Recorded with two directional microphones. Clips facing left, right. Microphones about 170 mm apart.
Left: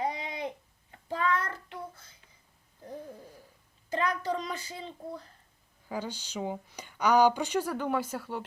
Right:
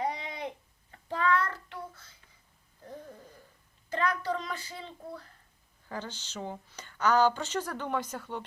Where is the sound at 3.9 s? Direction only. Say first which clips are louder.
Even; 15° left (ahead or behind).